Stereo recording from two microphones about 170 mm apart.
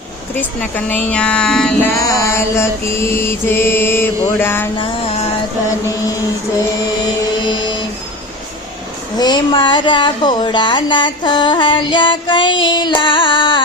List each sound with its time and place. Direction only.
1.1 s music: 5° left (ahead or behind)
1.9 s mantra: 20° left (ahead or behind)
4.8 s a sound: 35° left (ahead or behind)
7.4 s music: 25° left (ahead or behind)
9.1 s speech: 25° left (ahead or behind)